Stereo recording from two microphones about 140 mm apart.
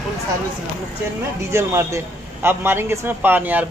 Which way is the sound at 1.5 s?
20° right (ahead or behind).